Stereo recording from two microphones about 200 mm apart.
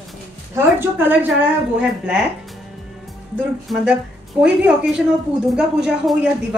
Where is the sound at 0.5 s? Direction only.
10° right (ahead or behind).